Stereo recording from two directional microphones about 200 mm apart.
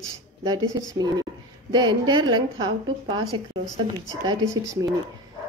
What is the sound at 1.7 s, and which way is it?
A woman's voice, 20° right (ahead or behind).